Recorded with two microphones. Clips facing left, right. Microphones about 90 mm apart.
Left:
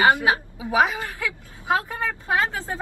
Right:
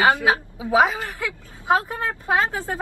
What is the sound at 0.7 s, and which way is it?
A woman's voice, 20° right (ahead or behind).